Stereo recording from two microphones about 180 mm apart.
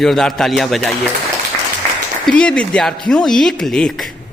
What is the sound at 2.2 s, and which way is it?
A man's voice, 5° left (ahead or behind).